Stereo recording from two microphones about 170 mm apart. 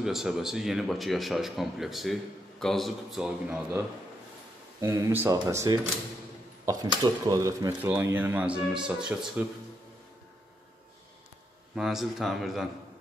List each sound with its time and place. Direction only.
0.0 s a man's voice: centre (ahead or behind)
4.7 s speech: 20° right (ahead or behind)
11.7 s a man's voice: centre (ahead or behind)